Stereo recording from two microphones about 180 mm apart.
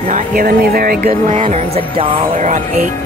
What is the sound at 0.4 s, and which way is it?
Speech, 55° right (ahead or behind).